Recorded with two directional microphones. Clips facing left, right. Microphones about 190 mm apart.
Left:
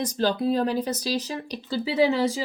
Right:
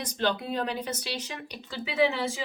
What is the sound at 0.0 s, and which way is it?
Speech, 35° left (ahead or behind).